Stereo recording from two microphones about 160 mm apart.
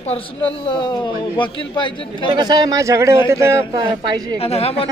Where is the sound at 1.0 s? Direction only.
30° left (ahead or behind).